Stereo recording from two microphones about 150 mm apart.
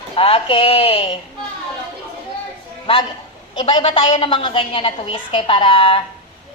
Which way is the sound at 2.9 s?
35° left (ahead or behind).